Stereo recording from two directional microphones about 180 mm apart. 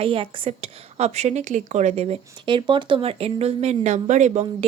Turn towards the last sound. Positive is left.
turn(degrees=-35)  # may be behind; listen again after turning